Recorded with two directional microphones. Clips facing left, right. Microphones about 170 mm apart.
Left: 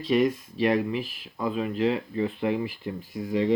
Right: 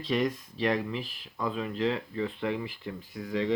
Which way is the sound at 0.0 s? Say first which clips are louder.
Left 6 dB; 5° left (ahead or behind).